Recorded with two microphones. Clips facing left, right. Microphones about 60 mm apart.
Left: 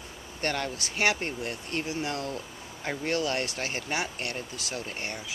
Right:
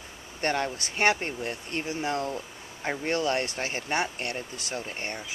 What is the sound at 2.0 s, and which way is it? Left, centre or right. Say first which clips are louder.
Speech: right 3 dB; right.